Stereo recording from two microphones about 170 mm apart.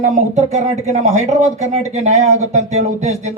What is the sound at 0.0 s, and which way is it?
Speech, 45° right (ahead or behind).